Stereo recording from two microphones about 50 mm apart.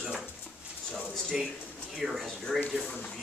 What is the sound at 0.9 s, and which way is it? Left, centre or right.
Speech, centre.